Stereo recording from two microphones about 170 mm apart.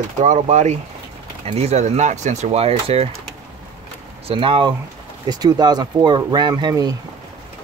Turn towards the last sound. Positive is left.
turn(degrees=-20)  # may be behind; listen again after turning